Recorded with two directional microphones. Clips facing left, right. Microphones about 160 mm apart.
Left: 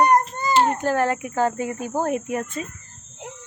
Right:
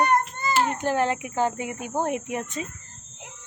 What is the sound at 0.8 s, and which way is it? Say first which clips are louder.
A child's voice: left 2 dB; 20° right (ahead or behind).